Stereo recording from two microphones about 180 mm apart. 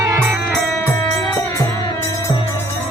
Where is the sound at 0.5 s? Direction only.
10° left (ahead or behind).